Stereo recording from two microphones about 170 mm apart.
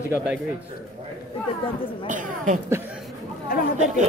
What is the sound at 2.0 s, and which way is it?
Speech, 50° right (ahead or behind).